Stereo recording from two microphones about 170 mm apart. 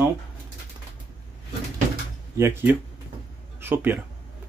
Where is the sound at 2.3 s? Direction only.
15° right (ahead or behind).